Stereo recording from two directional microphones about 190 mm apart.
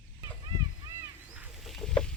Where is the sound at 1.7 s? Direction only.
5° left (ahead or behind).